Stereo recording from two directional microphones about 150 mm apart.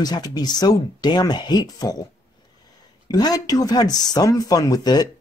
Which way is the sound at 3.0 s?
25° left (ahead or behind).